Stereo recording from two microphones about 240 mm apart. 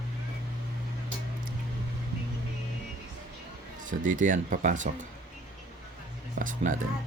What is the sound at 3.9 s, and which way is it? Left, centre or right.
Speech, right.